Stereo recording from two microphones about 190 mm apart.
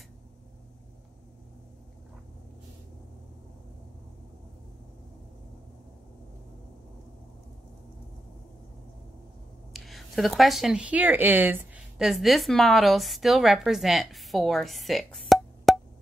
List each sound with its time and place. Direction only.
9.7 s speech: centre (ahead or behind)